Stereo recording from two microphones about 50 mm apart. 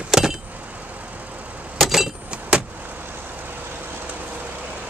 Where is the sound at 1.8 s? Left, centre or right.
Centre.